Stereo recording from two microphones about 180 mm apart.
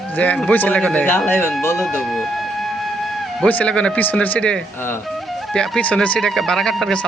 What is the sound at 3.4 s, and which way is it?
Speech, 5° left (ahead or behind).